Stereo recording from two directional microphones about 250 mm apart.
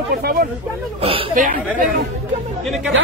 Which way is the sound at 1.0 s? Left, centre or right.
Right.